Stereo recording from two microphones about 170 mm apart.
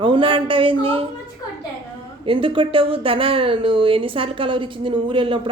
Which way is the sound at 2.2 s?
30° right (ahead or behind).